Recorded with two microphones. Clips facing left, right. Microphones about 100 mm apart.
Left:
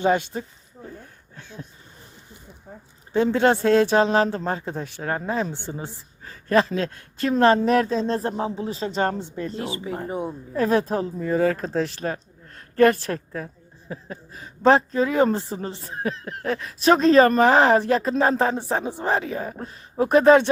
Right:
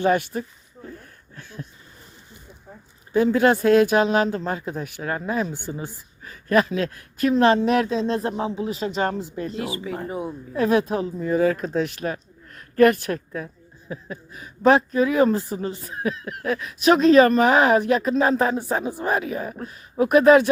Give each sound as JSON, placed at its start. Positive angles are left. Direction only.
{"t": 0.0, "sound": "speech", "side_deg": 20}
{"t": 3.1, "sound": "a woman's voice", "side_deg": 30}